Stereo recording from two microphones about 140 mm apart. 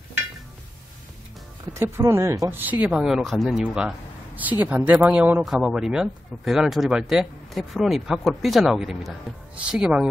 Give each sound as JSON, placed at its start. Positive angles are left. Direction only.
{"t": 1.7, "sound": "speech", "side_deg": -20}
{"t": 2.6, "sound": "a woman's voice", "side_deg": -10}